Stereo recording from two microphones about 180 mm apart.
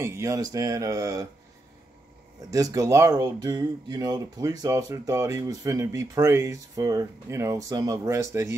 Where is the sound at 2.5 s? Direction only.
20° right (ahead or behind).